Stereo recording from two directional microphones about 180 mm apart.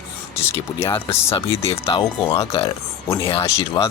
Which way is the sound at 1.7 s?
30° left (ahead or behind).